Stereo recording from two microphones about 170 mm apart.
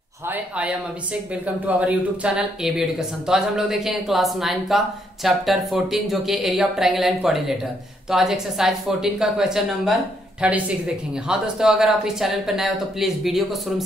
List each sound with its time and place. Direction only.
0.3 s speech: 5° right (ahead or behind)